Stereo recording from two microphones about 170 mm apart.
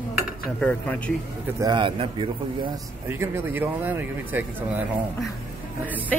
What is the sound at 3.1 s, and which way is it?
Speech, 15° right (ahead or behind).